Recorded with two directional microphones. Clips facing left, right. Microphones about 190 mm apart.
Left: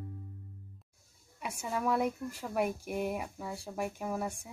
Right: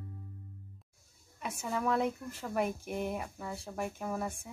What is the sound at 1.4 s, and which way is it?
Speech, 10° left (ahead or behind).